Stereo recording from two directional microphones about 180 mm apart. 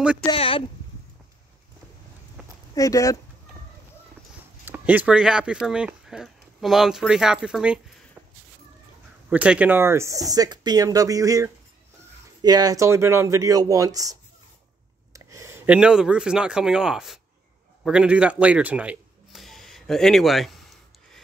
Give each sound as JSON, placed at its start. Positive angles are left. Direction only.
{"t": 0.3, "sound": "speech", "side_deg": 30}
{"t": 2.4, "sound": "a sound", "side_deg": -5}
{"t": 2.7, "sound": "speech", "side_deg": 20}
{"t": 4.6, "sound": "speech", "side_deg": -10}
{"t": 9.3, "sound": "speech", "side_deg": -5}
{"t": 15.1, "sound": "speech", "side_deg": -15}
{"t": 17.8, "sound": "a sound", "side_deg": -5}